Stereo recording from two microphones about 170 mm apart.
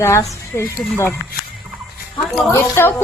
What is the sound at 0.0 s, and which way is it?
Speech, 15° left (ahead or behind).